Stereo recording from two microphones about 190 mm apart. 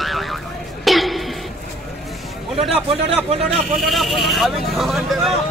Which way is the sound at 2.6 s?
30° right (ahead or behind).